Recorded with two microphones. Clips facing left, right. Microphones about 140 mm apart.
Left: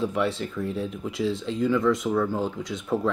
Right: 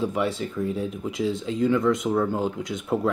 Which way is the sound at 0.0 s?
5° right (ahead or behind).